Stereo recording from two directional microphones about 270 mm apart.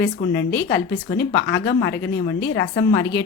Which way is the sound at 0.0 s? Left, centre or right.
Left.